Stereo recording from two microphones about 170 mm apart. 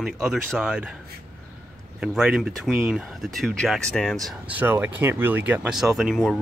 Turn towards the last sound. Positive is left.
turn(degrees=0)  # may be behind; listen again after turning